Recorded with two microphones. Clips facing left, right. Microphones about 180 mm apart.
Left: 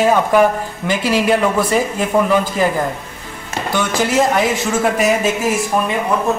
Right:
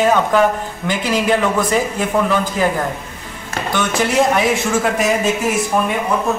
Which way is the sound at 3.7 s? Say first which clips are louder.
Even; 5° left (ahead or behind).